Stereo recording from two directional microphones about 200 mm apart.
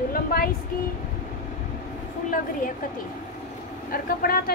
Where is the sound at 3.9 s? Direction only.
45° left (ahead or behind).